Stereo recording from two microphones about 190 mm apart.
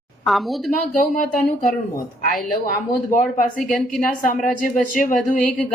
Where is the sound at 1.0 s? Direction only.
45° left (ahead or behind).